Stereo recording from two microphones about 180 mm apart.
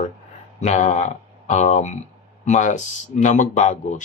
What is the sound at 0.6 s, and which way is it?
Speech, 40° left (ahead or behind).